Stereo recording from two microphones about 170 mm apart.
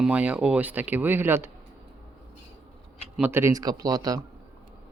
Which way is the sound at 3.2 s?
10° right (ahead or behind).